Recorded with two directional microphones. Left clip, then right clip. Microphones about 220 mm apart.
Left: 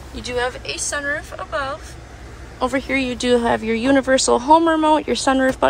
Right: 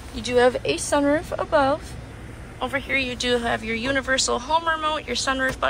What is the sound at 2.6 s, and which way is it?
Speech, 25° left (ahead or behind).